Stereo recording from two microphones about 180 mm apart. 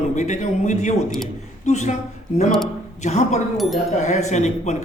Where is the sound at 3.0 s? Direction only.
40° left (ahead or behind).